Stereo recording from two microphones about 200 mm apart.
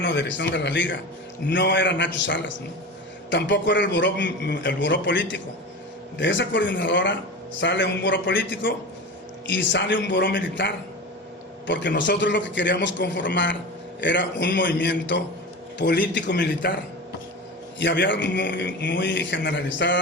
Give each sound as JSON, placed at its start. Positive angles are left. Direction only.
{"t": 0.0, "sound": "a man's voice", "side_deg": 65}
{"t": 17.7, "sound": "a man's voice", "side_deg": 60}